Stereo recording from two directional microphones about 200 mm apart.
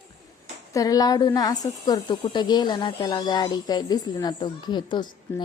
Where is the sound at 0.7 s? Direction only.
15° left (ahead or behind).